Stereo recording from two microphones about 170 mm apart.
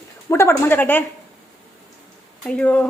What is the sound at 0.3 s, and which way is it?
Speech, 15° left (ahead or behind).